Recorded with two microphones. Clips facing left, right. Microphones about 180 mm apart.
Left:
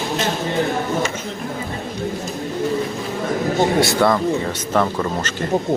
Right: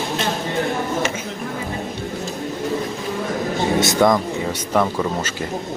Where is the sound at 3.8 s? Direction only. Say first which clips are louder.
Even; 15° right (ahead or behind).